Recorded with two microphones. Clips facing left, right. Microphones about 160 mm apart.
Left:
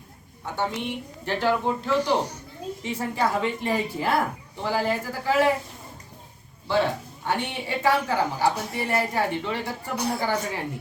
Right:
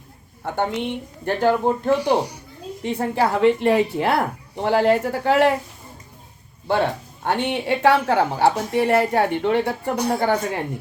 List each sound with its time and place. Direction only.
0.4 s speech: 55° right (ahead or behind)
2.1 s speech: 10° right (ahead or behind)
2.8 s a woman's voice: 60° right (ahead or behind)
6.7 s speech: 50° right (ahead or behind)
7.3 s a woman's voice: 65° right (ahead or behind)